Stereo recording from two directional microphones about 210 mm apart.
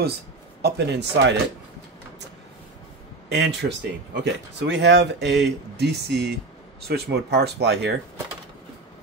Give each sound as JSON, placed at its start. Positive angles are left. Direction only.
{"t": 0.6, "sound": "speech", "side_deg": -50}
{"t": 3.3, "sound": "speech", "side_deg": -55}